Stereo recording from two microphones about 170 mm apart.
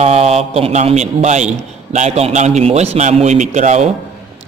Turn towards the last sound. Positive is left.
turn(degrees=-45)  # may be behind; listen again after turning